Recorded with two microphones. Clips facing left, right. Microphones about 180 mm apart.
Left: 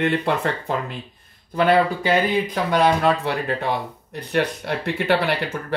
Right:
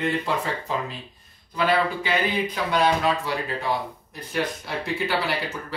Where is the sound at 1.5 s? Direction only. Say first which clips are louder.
Left 5 dB; 50° left (ahead or behind); by 5.3 s 65° left (ahead or behind).